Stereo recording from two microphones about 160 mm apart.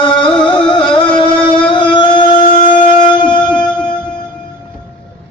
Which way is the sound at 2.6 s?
30° left (ahead or behind).